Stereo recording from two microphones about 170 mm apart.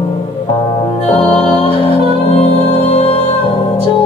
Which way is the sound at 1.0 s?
35° left (ahead or behind).